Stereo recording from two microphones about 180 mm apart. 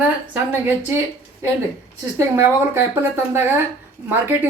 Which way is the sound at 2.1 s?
15° right (ahead or behind).